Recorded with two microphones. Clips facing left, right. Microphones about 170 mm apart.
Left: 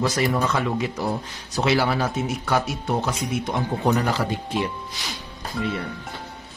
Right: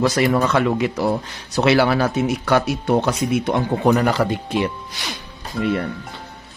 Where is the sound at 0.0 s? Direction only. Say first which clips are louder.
Right 5 dB; 75° right (ahead or behind).